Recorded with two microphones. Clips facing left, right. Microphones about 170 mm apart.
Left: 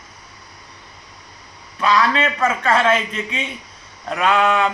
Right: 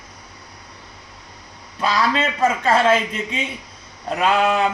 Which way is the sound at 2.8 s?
35° right (ahead or behind).